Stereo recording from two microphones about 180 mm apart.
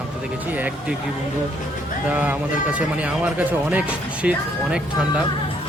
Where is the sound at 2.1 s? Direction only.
10° right (ahead or behind).